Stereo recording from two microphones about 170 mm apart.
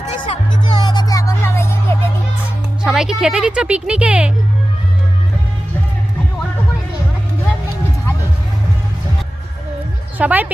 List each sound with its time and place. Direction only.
0.3 s music: 25° left (ahead or behind)
2.8 s a woman's voice: 5° right (ahead or behind)
10.2 s a woman's voice: 10° right (ahead or behind)